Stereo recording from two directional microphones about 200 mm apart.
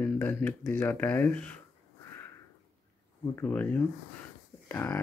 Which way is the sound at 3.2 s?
10° left (ahead or behind).